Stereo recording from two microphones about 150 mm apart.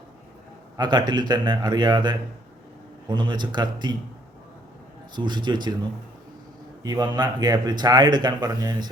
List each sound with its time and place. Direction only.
0.8 s speech: 30° right (ahead or behind)
5.1 s speech: 30° right (ahead or behind)
6.8 s speech: 25° right (ahead or behind)